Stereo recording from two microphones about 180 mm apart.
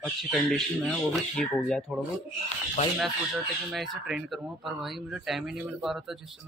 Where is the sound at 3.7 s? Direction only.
Centre (ahead or behind).